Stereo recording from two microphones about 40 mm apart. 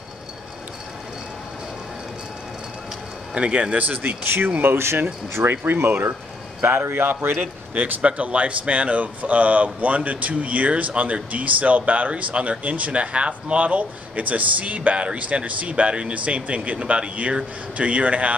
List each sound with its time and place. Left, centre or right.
3.3 s a man's voice: right
3.8 s speech: right
4.6 s speech: right
5.3 s speech: right
7.3 s speech: right